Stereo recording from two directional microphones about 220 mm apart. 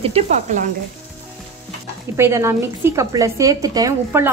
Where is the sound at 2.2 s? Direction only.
15° right (ahead or behind).